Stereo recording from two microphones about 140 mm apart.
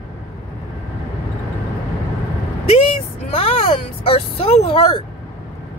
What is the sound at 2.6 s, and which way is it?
Vehicle, 45° left (ahead or behind).